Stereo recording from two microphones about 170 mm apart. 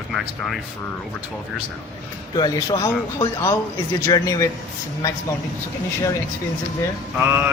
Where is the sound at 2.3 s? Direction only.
25° left (ahead or behind).